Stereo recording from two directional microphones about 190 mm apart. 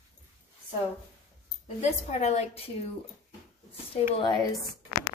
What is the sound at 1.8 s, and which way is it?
Speech, 35° left (ahead or behind).